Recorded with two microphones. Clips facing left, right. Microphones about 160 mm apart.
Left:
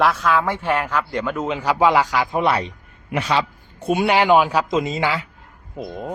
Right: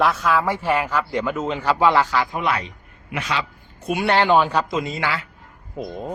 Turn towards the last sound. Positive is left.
turn(degrees=0)  # may be behind; listen again after turning